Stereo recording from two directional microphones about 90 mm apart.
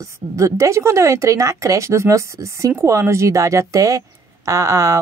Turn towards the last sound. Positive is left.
turn(degrees=-35)  # may be behind; listen again after turning